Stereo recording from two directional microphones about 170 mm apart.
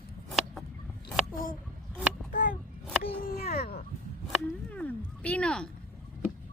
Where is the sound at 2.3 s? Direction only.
55° left (ahead or behind).